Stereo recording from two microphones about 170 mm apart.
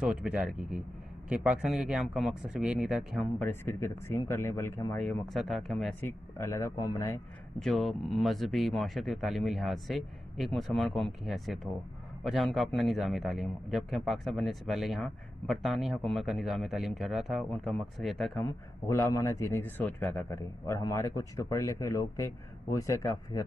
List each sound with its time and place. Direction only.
0.0 s a man's voice: 5° right (ahead or behind)
3.4 s a man's voice: 15° left (ahead or behind)
5.0 s a man's voice: centre (ahead or behind)
5.9 s a man's voice: 15° left (ahead or behind)
7.5 s a man's voice: centre (ahead or behind)
18.4 s a man's voice: 15° left (ahead or behind)